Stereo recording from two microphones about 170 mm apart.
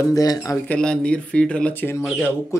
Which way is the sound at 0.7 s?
5° left (ahead or behind).